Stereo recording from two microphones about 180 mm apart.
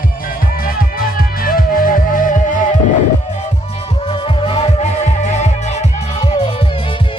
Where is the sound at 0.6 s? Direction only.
55° left (ahead or behind).